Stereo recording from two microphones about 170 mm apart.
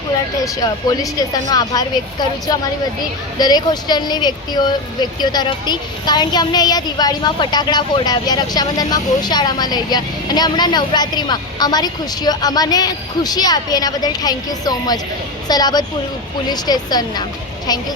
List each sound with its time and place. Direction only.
1.5 s a woman's voice: 25° left (ahead or behind)